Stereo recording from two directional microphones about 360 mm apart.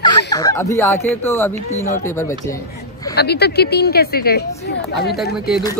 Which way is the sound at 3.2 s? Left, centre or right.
Left.